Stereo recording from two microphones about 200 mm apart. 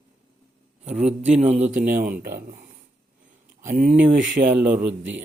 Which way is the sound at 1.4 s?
35° right (ahead or behind).